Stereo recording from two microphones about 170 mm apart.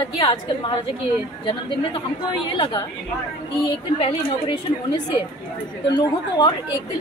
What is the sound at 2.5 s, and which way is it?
Speech, 30° left (ahead or behind).